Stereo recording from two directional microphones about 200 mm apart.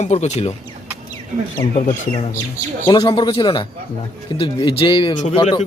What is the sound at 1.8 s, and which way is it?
Speech, 40° left (ahead or behind).